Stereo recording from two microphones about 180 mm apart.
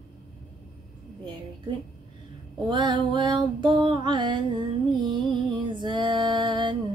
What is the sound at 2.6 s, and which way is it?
Female singing, 25° right (ahead or behind).